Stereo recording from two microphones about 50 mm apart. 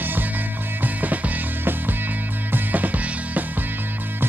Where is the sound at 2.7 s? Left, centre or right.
Right.